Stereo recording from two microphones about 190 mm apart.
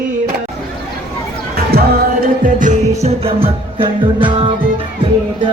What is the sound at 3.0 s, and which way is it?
Music, 30° right (ahead or behind).